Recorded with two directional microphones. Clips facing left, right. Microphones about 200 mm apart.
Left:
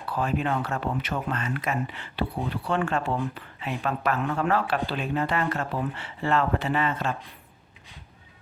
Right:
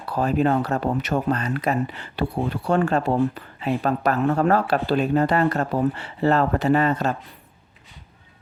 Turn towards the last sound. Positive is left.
turn(degrees=-40)  # may be behind; listen again after turning